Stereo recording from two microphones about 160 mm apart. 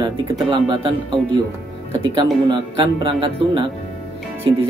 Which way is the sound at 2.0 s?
30° right (ahead or behind).